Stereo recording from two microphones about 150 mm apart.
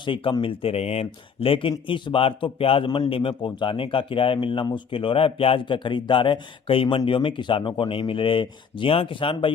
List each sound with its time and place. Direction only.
0.0 s a man's voice: 35° left (ahead or behind)